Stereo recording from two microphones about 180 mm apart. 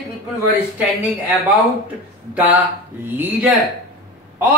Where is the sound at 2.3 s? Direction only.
10° right (ahead or behind).